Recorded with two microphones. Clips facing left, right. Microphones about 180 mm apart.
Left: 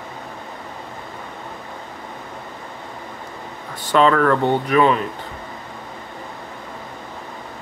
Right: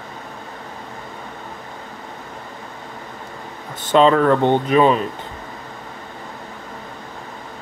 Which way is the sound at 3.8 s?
20° right (ahead or behind).